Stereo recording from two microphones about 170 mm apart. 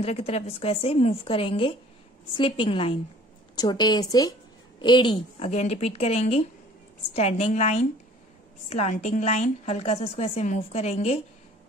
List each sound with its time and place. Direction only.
0.0 s a woman's voice: 40° left (ahead or behind)